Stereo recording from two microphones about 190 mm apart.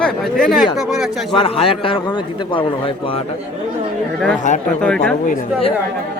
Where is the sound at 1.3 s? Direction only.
30° left (ahead or behind).